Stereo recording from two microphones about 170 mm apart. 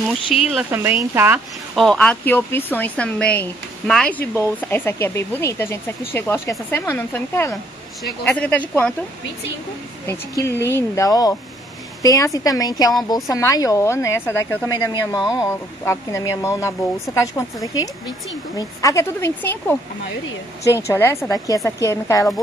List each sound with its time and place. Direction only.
0.1 s speech: centre (ahead or behind)
0.7 s speech: 15° right (ahead or behind)
1.8 s speech: 5° left (ahead or behind)
10.0 s a woman's voice: 15° left (ahead or behind)
20.8 s speech: 15° left (ahead or behind)